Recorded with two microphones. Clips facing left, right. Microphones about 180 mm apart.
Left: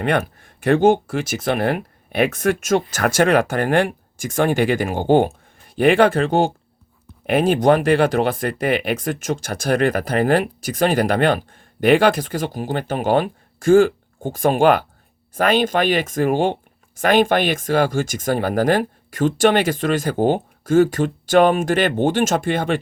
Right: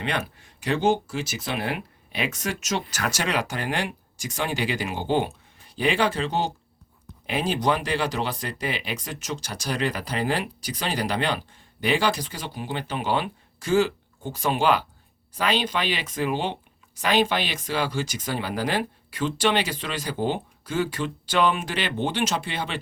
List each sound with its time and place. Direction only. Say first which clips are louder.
0.0 s speech: left 9 dB; 50° left (ahead or behind)